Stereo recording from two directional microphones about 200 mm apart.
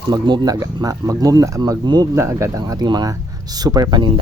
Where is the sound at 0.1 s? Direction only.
20° right (ahead or behind).